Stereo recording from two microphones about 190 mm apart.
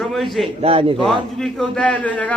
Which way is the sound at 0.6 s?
30° right (ahead or behind).